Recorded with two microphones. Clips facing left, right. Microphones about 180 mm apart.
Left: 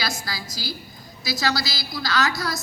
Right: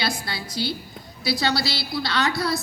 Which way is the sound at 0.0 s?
30° right (ahead or behind).